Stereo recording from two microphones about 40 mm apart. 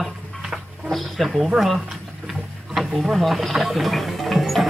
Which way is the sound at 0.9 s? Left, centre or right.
Centre.